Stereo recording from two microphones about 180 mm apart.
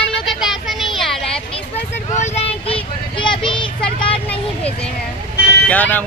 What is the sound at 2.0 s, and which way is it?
Vehicle, 40° left (ahead or behind).